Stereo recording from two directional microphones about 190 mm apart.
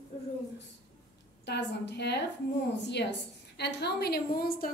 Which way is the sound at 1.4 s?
60° left (ahead or behind).